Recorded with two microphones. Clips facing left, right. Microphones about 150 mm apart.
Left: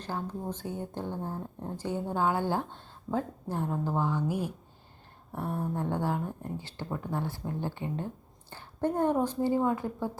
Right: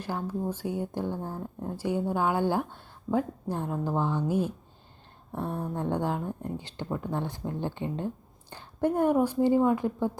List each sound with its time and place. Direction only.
0.0 s speech: 10° right (ahead or behind)
1.1 s speech: 15° left (ahead or behind)
1.7 s speech: 10° right (ahead or behind)
5.7 s speech: 20° right (ahead or behind)